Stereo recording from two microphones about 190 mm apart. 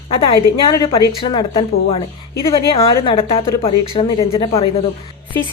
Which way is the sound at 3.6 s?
25° left (ahead or behind).